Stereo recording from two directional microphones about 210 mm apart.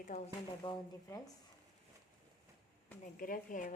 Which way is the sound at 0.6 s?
20° left (ahead or behind).